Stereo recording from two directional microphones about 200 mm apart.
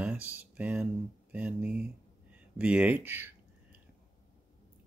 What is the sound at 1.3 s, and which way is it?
Speech, 5° right (ahead or behind).